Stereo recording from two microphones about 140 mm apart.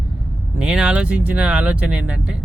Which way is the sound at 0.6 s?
5° right (ahead or behind).